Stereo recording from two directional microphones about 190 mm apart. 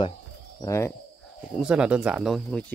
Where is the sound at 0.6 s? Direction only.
15° left (ahead or behind).